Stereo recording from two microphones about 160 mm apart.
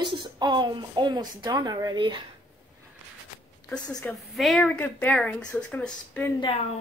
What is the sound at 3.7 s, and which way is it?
A woman's voice, 5° left (ahead or behind).